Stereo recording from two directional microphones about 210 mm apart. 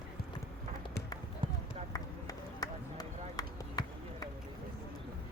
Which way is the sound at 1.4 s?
25° right (ahead or behind).